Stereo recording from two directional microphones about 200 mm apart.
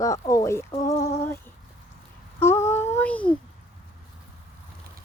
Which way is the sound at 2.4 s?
15° left (ahead or behind).